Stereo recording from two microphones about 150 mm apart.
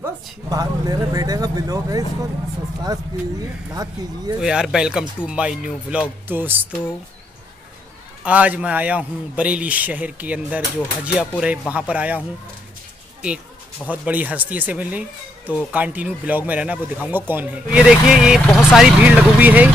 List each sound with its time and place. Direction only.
0.0 s speech: 25° right (ahead or behind)
3.7 s speech: 25° right (ahead or behind)
4.4 s speech: 5° right (ahead or behind)
8.2 s speech: 10° right (ahead or behind)
13.8 s speech: 10° right (ahead or behind)